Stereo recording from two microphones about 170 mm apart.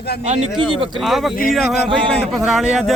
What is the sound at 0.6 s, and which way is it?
Speech, 30° right (ahead or behind).